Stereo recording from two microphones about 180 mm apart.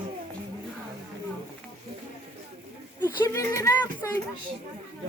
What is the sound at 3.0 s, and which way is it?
Speech, 15° left (ahead or behind).